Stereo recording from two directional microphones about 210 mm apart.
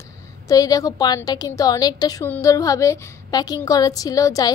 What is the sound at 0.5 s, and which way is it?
A woman's voice, 15° left (ahead or behind).